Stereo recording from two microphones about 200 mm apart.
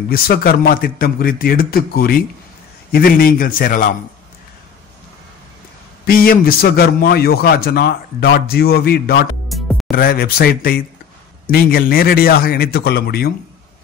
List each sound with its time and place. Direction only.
0.1 s a man's voice: 50° left (ahead or behind)
6.0 s a man's voice: 45° left (ahead or behind)
9.5 s music: centre (ahead or behind)
9.9 s a man's voice: 50° left (ahead or behind)